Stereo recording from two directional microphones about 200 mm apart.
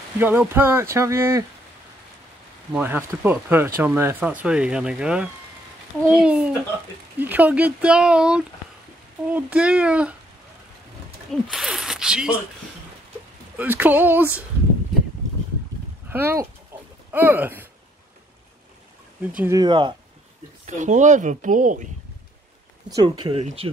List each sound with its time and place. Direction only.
0.2 s speech: 10° right (ahead or behind)
2.7 s speech: 10° right (ahead or behind)
11.5 s speech: 5° right (ahead or behind)
13.6 s speech: 10° right (ahead or behind)
16.1 s speech: 10° right (ahead or behind)
19.3 s speech: 10° right (ahead or behind)
19.6 s speech: 25° right (ahead or behind)
20.6 s speech: 35° right (ahead or behind)
22.8 s speech: 20° right (ahead or behind)